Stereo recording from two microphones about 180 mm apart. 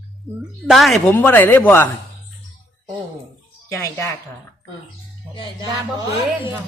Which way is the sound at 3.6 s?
20° left (ahead or behind).